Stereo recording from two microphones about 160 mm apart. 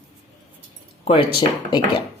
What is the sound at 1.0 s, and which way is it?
A woman's voice, 35° left (ahead or behind).